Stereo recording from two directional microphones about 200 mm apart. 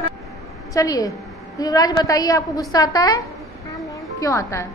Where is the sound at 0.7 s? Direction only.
20° left (ahead or behind).